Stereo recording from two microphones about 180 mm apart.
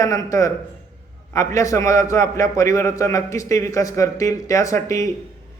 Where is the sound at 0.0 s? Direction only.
20° left (ahead or behind).